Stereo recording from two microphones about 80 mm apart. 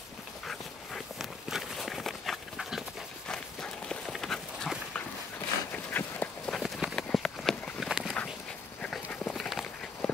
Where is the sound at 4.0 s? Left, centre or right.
Centre.